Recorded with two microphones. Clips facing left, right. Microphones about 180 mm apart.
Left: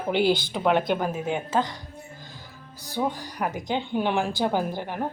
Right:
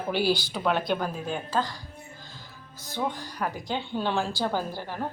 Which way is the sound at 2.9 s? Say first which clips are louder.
Left 3 dB; 15° left (ahead or behind).